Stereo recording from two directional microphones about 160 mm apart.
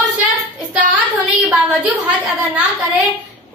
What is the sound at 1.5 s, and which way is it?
Speech, centre (ahead or behind).